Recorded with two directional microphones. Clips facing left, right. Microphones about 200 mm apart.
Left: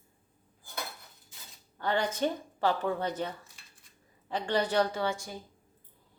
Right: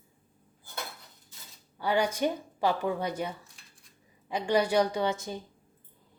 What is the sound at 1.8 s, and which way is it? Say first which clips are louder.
Speech: right 2 dB; 10° right (ahead or behind).